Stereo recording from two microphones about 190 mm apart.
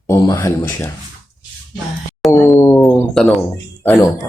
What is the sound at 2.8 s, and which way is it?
Speech, centre (ahead or behind).